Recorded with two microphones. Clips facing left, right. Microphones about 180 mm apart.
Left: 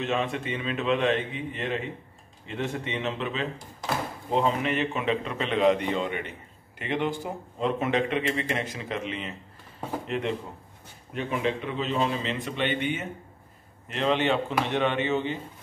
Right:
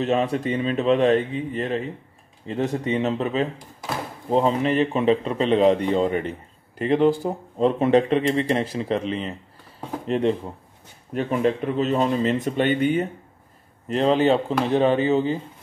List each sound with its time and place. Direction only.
0.0 s speech: 40° right (ahead or behind)